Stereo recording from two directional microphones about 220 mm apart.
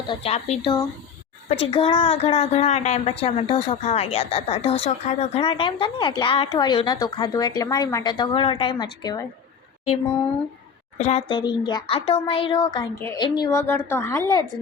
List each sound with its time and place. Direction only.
0.1 s a woman's voice: 25° left (ahead or behind)
10.9 s a woman's voice: 30° left (ahead or behind)